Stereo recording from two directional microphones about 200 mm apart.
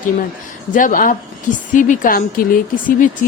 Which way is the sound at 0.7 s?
40° left (ahead or behind).